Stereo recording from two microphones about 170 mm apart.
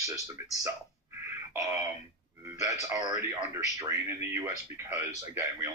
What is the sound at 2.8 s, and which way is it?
A man's voice, 20° right (ahead or behind).